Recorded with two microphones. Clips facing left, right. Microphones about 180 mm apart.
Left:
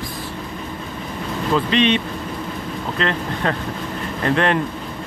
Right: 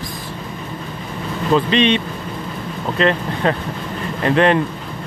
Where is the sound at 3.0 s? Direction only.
15° right (ahead or behind).